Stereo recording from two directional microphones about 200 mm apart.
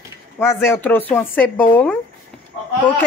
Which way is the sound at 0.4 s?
10° left (ahead or behind).